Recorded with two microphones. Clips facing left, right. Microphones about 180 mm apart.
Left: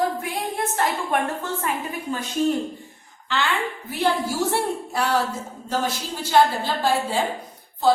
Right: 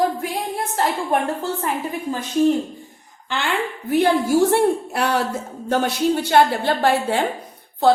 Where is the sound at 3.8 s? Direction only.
55° right (ahead or behind).